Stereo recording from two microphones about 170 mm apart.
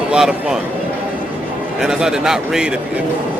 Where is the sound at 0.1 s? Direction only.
5° right (ahead or behind).